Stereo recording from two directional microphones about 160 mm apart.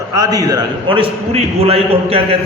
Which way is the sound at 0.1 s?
25° right (ahead or behind).